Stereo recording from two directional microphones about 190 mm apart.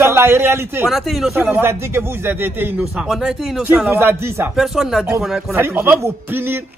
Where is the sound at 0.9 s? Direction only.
Centre (ahead or behind).